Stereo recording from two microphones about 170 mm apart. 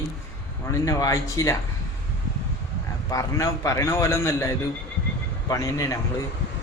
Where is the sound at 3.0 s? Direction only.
20° left (ahead or behind).